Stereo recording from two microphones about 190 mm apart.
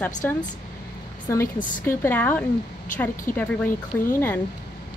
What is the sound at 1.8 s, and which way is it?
A woman's voice, 10° left (ahead or behind).